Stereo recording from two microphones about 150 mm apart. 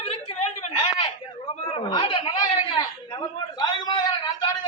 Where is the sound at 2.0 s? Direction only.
35° left (ahead or behind).